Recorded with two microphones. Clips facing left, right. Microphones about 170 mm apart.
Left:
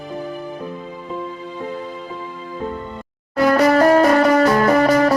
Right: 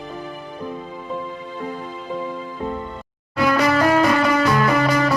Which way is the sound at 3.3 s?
45° left (ahead or behind).